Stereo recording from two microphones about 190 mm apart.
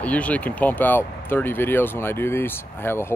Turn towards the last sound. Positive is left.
turn(degrees=10)  # may be behind; listen again after turning